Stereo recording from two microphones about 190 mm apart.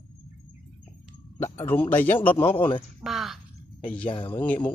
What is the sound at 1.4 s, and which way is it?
Speech, 10° left (ahead or behind).